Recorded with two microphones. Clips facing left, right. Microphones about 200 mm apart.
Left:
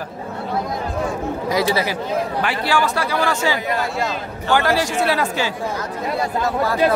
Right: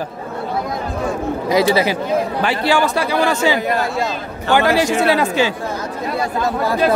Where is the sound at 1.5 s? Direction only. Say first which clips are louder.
Right 5 dB; 25° right (ahead or behind).